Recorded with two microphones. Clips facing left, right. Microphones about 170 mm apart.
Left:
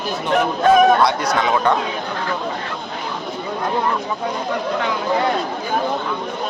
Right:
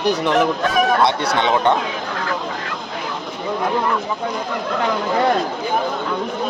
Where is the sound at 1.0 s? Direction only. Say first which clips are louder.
Even; 30° right (ahead or behind).